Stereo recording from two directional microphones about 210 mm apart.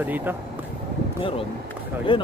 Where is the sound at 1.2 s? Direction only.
25° left (ahead or behind).